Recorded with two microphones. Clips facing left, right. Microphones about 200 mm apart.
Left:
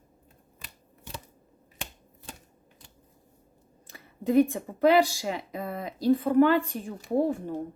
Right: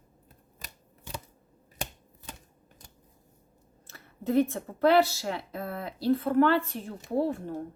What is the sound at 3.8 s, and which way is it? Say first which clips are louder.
Speech: left 3 dB; 15° left (ahead or behind).